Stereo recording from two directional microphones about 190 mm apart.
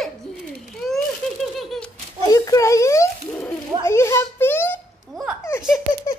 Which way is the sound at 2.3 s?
20° left (ahead or behind).